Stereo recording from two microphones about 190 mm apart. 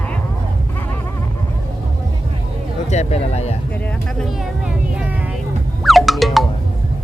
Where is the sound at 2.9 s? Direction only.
35° left (ahead or behind).